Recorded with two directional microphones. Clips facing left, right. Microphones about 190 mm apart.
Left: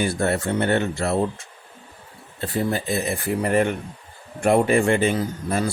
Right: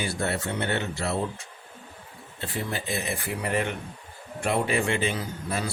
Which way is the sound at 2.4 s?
40° left (ahead or behind).